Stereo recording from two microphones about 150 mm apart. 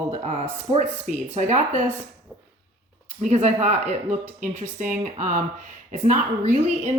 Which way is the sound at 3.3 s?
45° right (ahead or behind).